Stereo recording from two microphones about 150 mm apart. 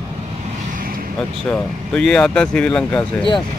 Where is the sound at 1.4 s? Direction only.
5° left (ahead or behind).